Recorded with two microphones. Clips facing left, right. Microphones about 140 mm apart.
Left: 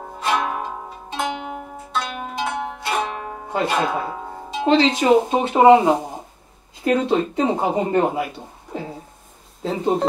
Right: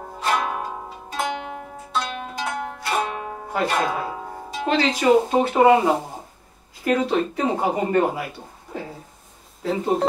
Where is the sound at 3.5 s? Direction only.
25° left (ahead or behind).